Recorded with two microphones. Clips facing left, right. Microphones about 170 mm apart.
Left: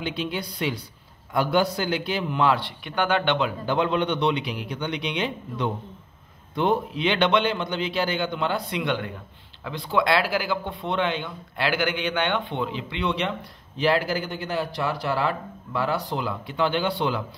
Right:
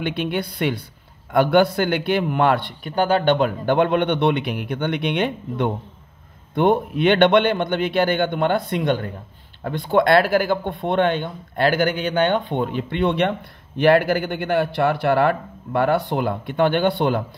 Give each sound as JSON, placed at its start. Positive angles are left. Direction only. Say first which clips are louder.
{"t": 0.0, "sound": "a man's voice", "louder": "right 5 dB", "side_deg": -60}
{"t": 2.9, "sound": "a man's voice", "louder": "right 5 dB", "side_deg": -35}